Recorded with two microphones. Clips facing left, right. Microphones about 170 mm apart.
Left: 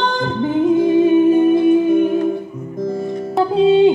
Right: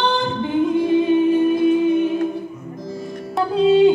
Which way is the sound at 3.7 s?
25° left (ahead or behind).